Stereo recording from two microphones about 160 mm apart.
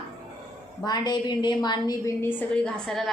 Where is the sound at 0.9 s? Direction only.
25° left (ahead or behind).